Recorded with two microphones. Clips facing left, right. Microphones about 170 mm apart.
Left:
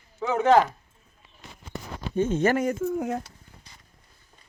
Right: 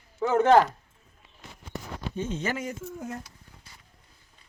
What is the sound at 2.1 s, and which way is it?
Speech, 50° left (ahead or behind).